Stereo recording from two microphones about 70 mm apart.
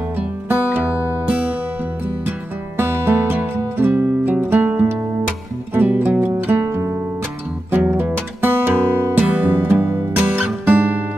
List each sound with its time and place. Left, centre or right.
0.5 s music: right
2.8 s music: right
7.7 s music: centre
8.0 s music: right
9.2 s music: right